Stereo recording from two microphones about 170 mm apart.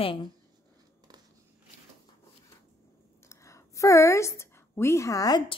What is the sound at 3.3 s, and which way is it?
A woman's voice, 15° left (ahead or behind).